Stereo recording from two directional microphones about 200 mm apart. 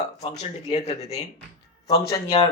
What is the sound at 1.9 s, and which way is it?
Speech, 20° left (ahead or behind).